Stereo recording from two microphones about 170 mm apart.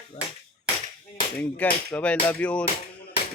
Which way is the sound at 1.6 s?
10° left (ahead or behind).